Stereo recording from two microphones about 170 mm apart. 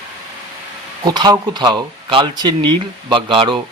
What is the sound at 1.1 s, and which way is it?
Speech, 25° right (ahead or behind).